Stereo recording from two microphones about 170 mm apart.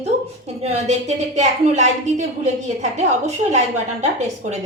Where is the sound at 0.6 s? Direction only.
40° right (ahead or behind).